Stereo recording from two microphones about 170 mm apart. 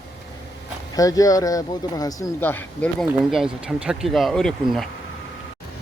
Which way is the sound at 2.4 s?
10° left (ahead or behind).